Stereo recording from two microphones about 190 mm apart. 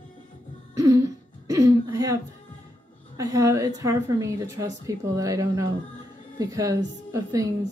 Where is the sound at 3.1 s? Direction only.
15° right (ahead or behind).